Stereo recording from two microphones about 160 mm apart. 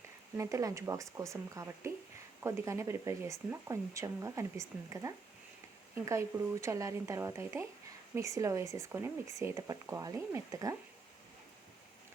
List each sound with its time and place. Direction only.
0.3 s speech: 20° right (ahead or behind)